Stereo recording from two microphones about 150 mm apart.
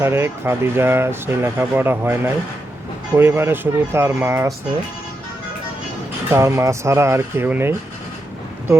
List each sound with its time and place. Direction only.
0.0 s speech: 15° right (ahead or behind)
6.3 s speech: 20° right (ahead or behind)